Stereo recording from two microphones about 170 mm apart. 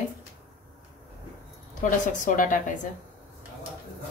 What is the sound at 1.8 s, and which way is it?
Speech, 50° left (ahead or behind).